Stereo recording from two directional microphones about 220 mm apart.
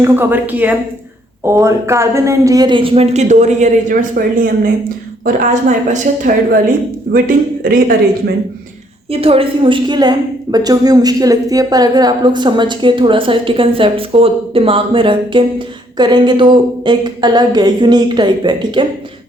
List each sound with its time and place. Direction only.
0.0 s a woman's voice: 10° right (ahead or behind); by 7.9 s 40° right (ahead or behind)
9.1 s a woman's voice: 25° right (ahead or behind)